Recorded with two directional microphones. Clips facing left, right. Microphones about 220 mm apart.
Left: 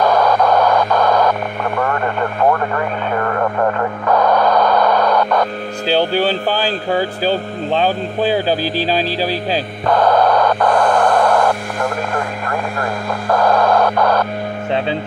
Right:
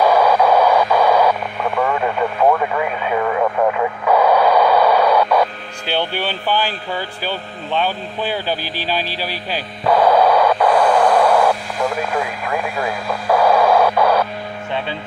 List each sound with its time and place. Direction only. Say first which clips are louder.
0.0 s radio: even; 10° right (ahead or behind)
5.9 s speech: left 6 dB; 40° left (ahead or behind)
9.8 s a sound: even; 10° right (ahead or behind)